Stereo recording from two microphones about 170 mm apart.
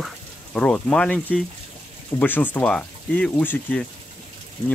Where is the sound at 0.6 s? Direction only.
5° left (ahead or behind).